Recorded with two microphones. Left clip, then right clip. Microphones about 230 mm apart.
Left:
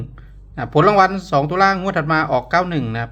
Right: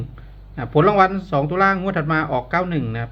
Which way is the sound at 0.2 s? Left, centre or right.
Centre.